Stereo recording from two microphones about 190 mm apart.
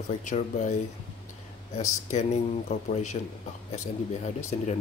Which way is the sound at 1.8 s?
40° left (ahead or behind).